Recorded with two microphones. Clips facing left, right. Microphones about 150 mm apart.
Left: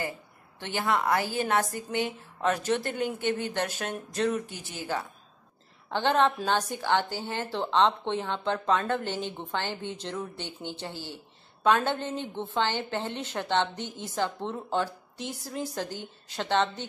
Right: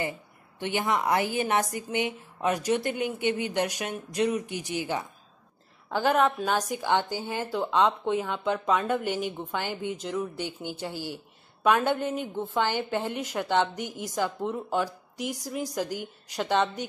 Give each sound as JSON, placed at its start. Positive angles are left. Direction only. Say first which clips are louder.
{"t": 0.6, "sound": "a woman's voice", "louder": "right 1 dB", "side_deg": -15}